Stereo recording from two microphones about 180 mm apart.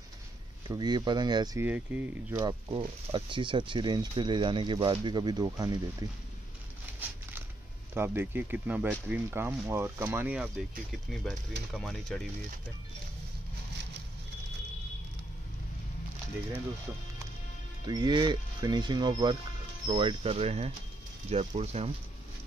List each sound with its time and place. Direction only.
0.7 s speech: 25° right (ahead or behind)
1.7 s speech: 10° right (ahead or behind)
2.3 s speech: 25° right (ahead or behind)
6.9 s a sound: 10° right (ahead or behind)
7.9 s speech: 10° right (ahead or behind); by 12.3 s 5° left (ahead or behind)
17.8 s speech: 25° right (ahead or behind)